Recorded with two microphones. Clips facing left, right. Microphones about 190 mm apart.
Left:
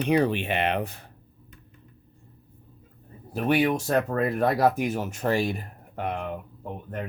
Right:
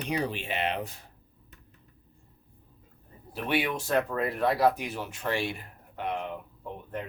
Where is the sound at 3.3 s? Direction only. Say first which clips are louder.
Left 6 dB; 45° left (ahead or behind).